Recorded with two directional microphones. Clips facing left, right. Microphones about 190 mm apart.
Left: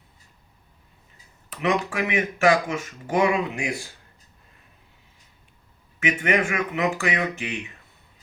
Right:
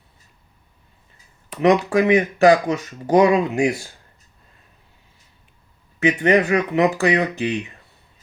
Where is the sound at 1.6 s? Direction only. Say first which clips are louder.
Right 9 dB; 40° right (ahead or behind).